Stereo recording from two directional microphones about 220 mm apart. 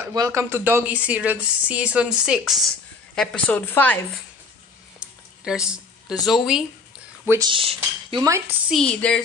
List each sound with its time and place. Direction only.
0.0 s a woman's voice: 15° right (ahead or behind); by 4.0 s 10° left (ahead or behind)
5.4 s a woman's voice: 5° right (ahead or behind)
7.2 s a woman's voice: 15° right (ahead or behind)
8.6 s a woman's voice: centre (ahead or behind)